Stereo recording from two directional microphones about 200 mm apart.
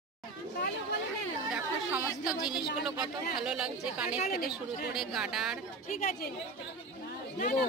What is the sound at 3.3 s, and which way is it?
A woman's voice, 5° right (ahead or behind).